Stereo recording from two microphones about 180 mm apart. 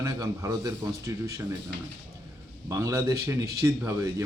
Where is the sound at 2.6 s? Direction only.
20° right (ahead or behind).